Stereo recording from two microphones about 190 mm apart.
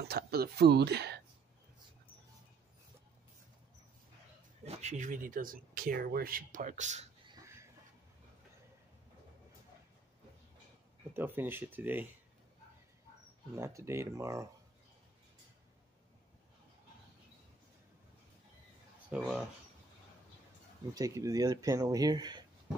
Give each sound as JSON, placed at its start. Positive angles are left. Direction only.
{"t": 0.1, "sound": "speech", "side_deg": -55}
{"t": 4.6, "sound": "speech", "side_deg": -40}
{"t": 11.1, "sound": "speech", "side_deg": -10}
{"t": 13.6, "sound": "speech", "side_deg": -15}
{"t": 19.0, "sound": "speech", "side_deg": -5}
{"t": 20.9, "sound": "speech", "side_deg": -15}